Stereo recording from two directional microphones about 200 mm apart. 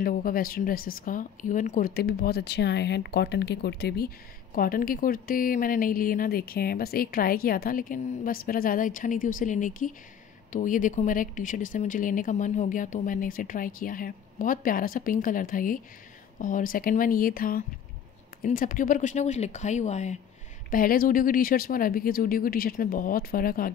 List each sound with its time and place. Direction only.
0.0 s a woman's voice: 45° left (ahead or behind)
2.0 s a woman's voice: 50° left (ahead or behind)